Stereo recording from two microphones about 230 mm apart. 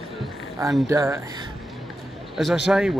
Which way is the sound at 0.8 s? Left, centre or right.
Centre.